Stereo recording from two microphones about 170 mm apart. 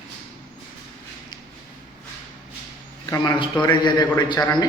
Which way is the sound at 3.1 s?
25° left (ahead or behind).